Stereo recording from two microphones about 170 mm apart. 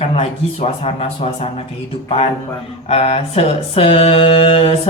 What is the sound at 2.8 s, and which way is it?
Speech, 35° left (ahead or behind).